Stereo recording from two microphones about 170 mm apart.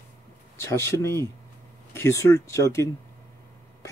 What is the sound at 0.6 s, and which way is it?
Speech, 15° left (ahead or behind).